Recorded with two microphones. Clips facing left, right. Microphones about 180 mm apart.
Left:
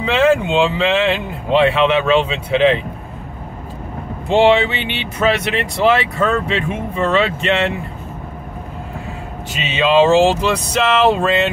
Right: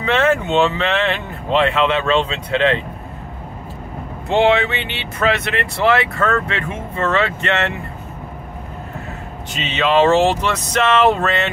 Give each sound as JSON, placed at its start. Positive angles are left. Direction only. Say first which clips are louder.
{"t": 0.1, "sound": "speech", "louder": "left 2 dB", "side_deg": 10}
{"t": 4.3, "sound": "speech", "louder": "left 2 dB", "side_deg": 15}
{"t": 9.7, "sound": "speech", "louder": "left 2 dB", "side_deg": 10}